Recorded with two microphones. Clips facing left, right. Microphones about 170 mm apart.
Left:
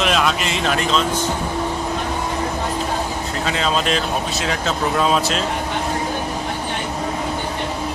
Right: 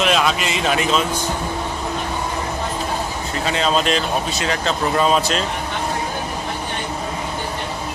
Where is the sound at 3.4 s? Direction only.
Centre (ahead or behind).